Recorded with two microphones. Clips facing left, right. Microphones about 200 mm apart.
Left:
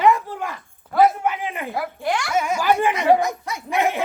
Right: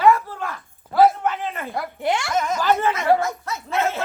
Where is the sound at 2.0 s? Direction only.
25° right (ahead or behind).